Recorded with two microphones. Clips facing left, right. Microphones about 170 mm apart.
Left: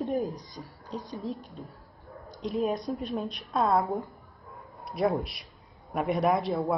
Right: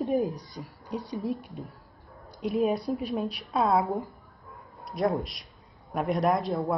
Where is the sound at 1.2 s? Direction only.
15° right (ahead or behind).